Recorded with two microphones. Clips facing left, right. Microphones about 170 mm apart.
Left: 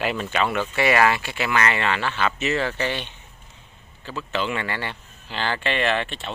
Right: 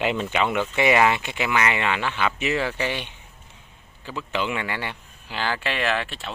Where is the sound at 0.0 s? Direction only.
20° right (ahead or behind).